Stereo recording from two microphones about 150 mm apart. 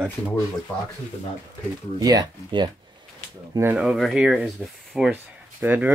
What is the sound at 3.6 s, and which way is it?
Speech, 10° right (ahead or behind).